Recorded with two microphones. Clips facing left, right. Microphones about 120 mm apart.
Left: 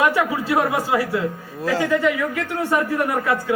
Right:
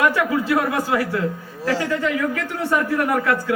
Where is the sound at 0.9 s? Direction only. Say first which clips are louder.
Even; 15° left (ahead or behind).